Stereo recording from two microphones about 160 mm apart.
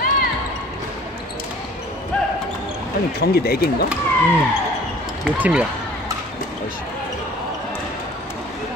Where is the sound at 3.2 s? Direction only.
70° left (ahead or behind).